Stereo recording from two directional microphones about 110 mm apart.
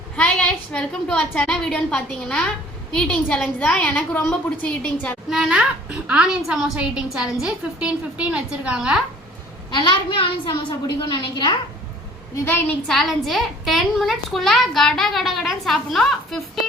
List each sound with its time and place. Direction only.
0.2 s a woman's voice: 10° left (ahead or behind)
5.3 s a child's voice: 5° right (ahead or behind)
9.8 s a woman's voice: 50° left (ahead or behind)
12.5 s a woman's voice: 20° left (ahead or behind)
12.9 s a woman's voice: centre (ahead or behind)